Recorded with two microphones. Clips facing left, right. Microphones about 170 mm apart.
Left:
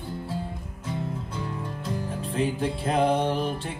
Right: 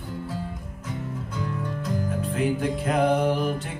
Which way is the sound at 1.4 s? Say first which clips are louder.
Right 3 dB; 30° left (ahead or behind).